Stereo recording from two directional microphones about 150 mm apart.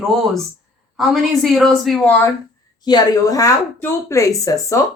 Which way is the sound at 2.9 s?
25° left (ahead or behind).